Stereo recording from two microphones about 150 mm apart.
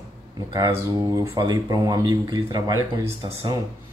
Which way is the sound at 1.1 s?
25° right (ahead or behind).